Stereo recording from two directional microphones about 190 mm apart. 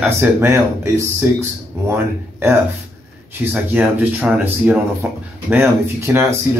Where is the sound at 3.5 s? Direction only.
10° right (ahead or behind).